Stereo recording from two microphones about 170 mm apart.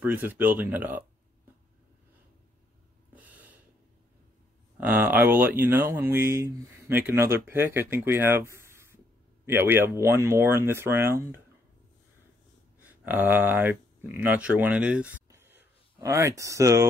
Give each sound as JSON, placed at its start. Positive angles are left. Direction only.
{"t": 0.0, "sound": "speech", "side_deg": -10}
{"t": 3.2, "sound": "snort", "side_deg": -10}
{"t": 4.7, "sound": "speech", "side_deg": -10}
{"t": 12.8, "sound": "speech", "side_deg": -10}
{"t": 15.2, "sound": "a sound", "side_deg": -15}